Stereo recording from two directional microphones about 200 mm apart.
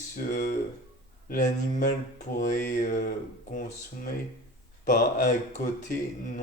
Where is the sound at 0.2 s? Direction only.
50° left (ahead or behind).